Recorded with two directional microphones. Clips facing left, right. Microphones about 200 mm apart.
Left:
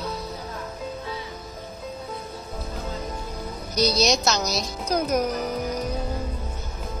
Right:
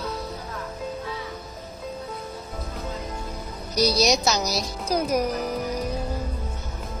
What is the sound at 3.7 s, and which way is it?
Speech, 35° right (ahead or behind).